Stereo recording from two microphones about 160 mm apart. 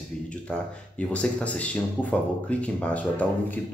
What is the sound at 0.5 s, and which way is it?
Speech, 5° left (ahead or behind).